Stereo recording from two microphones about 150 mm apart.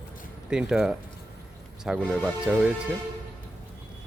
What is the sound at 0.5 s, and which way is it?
Speech, 5° right (ahead or behind).